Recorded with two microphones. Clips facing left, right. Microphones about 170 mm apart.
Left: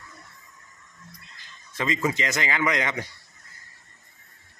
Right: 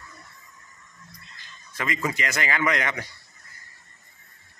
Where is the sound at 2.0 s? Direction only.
20° left (ahead or behind).